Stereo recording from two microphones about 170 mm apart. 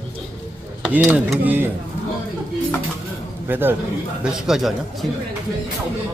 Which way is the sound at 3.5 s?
10° right (ahead or behind).